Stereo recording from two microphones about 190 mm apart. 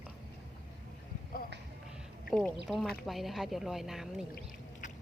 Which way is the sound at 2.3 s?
5° left (ahead or behind).